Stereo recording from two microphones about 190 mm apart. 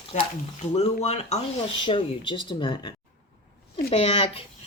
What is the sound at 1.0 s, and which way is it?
Speech, 35° left (ahead or behind).